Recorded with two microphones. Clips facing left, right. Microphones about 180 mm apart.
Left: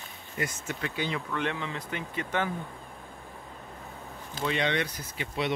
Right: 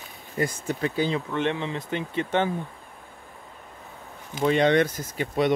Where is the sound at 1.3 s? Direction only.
25° right (ahead or behind).